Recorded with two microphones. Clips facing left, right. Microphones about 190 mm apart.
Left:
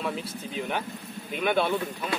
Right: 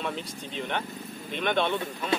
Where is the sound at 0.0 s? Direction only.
5° left (ahead or behind).